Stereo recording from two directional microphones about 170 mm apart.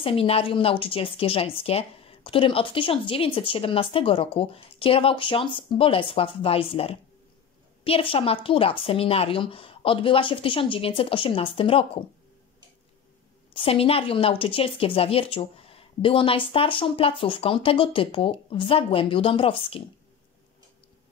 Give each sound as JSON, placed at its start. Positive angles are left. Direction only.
{"t": 0.0, "sound": "a woman's voice", "side_deg": 35}
{"t": 13.5, "sound": "a woman's voice", "side_deg": 35}